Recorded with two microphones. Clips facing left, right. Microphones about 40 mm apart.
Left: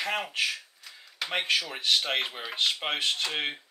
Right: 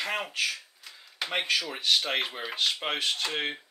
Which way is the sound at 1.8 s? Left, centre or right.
Centre.